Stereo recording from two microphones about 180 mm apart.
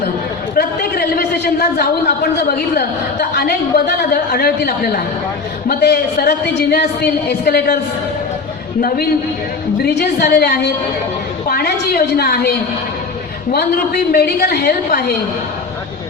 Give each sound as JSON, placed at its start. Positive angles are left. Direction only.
{"t": 0.5, "sound": "a man's voice", "side_deg": 55}
{"t": 9.8, "sound": "a woman's voice", "side_deg": 60}
{"t": 13.5, "sound": "a woman's voice", "side_deg": 60}